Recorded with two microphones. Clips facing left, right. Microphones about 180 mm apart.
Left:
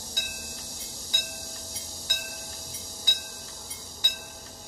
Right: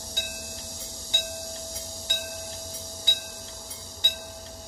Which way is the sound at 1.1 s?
25° right (ahead or behind).